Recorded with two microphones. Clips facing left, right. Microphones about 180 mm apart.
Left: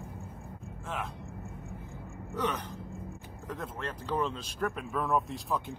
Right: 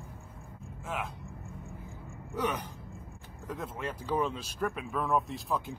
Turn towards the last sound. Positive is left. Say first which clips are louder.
# even
turn(degrees=0)  # may be behind; listen again after turning